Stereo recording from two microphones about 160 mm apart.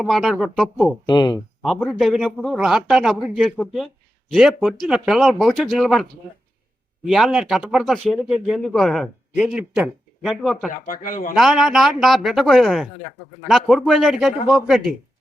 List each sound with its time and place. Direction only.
0.0 s speech: centre (ahead or behind)
1.0 s speech: 25° left (ahead or behind)
1.6 s speech: centre (ahead or behind)
10.8 s speech: 55° left (ahead or behind)
11.3 s speech: centre (ahead or behind)